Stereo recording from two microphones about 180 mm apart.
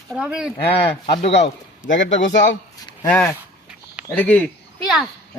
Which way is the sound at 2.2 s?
85° left.